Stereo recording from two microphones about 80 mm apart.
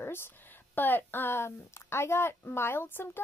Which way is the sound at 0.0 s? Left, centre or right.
Left.